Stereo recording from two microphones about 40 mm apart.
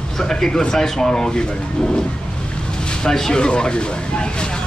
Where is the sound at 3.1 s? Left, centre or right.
Centre.